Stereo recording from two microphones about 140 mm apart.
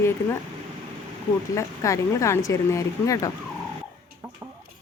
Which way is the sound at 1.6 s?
20° left (ahead or behind).